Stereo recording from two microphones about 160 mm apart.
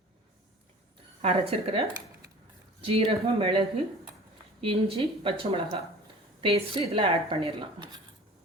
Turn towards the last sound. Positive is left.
turn(degrees=-35)  # may be behind; listen again after turning